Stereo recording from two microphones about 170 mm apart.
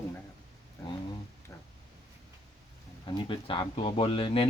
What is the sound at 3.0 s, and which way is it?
Speech, 25° left (ahead or behind).